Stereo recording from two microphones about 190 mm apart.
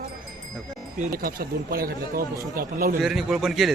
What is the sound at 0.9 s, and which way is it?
Speech, 45° right (ahead or behind).